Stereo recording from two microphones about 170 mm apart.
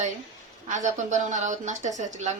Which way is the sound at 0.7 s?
45° right (ahead or behind).